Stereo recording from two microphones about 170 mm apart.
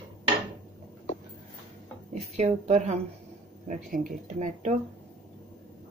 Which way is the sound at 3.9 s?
50° right (ahead or behind).